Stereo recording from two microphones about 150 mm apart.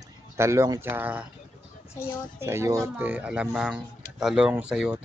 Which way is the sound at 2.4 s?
20° right (ahead or behind).